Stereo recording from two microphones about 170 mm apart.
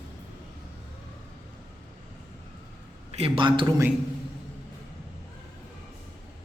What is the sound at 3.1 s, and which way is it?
Speech, 30° right (ahead or behind).